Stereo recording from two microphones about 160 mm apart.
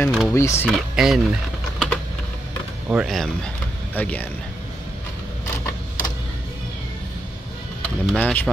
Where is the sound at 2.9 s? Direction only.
Centre (ahead or behind).